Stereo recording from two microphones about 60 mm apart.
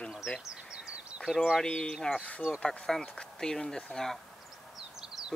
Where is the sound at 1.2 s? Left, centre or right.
Centre.